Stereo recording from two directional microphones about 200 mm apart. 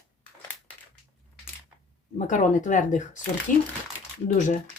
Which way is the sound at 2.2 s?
40° left (ahead or behind).